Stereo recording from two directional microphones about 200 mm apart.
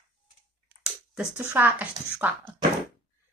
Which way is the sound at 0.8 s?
5° right (ahead or behind).